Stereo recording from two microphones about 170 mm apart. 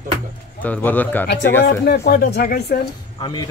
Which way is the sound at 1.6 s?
70° left (ahead or behind).